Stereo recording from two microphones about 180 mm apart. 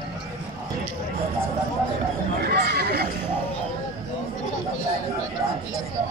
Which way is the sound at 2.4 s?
60° right (ahead or behind).